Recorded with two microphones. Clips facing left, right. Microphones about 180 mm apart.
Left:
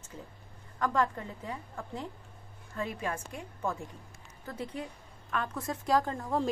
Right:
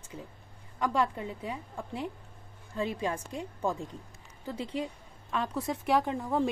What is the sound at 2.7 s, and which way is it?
A woman's voice, 25° right (ahead or behind).